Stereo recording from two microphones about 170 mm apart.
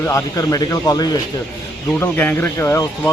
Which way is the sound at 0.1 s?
20° left (ahead or behind).